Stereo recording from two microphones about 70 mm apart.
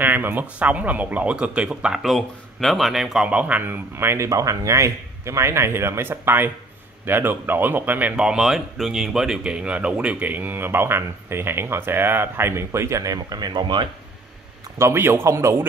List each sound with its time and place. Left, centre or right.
0.0 s speech: right; by 2.1 s centre
2.1 s speech: centre
3.3 s speech: centre; by 4.3 s right
4.3 s speech: right
8.2 s speech: centre; by 13.8 s right
14.8 s speech: right